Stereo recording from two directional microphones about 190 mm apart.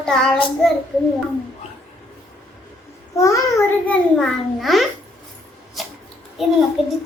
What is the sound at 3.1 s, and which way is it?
Speech, 15° left (ahead or behind).